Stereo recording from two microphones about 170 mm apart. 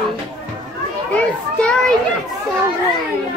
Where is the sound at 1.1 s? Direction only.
5° left (ahead or behind).